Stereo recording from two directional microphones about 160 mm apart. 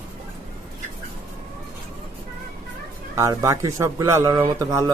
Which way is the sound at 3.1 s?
20° right (ahead or behind).